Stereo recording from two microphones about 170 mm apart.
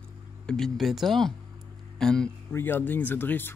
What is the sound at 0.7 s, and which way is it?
Speech, centre (ahead or behind).